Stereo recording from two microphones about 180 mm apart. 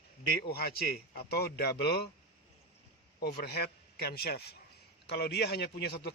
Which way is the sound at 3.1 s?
60° left (ahead or behind).